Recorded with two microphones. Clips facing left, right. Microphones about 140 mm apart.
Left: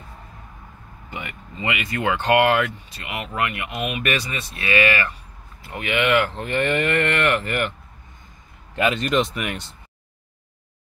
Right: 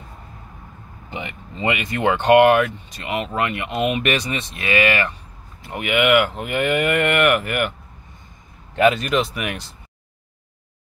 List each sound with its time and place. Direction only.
1.1 s speech: 25° right (ahead or behind)
5.6 s cattle: 20° right (ahead or behind)
8.9 s speech: 5° right (ahead or behind)